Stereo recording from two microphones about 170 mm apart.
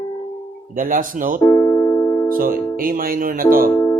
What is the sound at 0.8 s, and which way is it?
Music, 55° right (ahead or behind).